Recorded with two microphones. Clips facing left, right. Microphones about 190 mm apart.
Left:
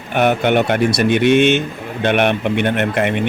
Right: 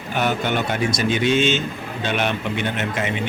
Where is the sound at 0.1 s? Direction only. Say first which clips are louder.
Left 7 dB; 60° left (ahead or behind).